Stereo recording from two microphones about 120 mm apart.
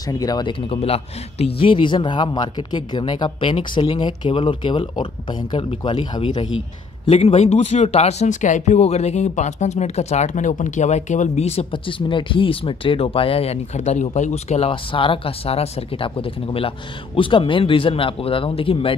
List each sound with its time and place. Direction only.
0.1 s speech: 30° left (ahead or behind)
7.1 s speech: 60° left (ahead or behind)
14.7 s speech: 45° left (ahead or behind)